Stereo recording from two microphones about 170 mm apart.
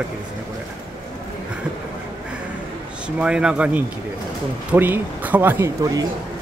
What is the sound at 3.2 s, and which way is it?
Speech, 5° right (ahead or behind).